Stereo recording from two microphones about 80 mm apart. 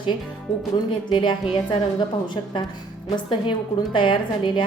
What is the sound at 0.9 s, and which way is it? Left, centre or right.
A woman's voice, left.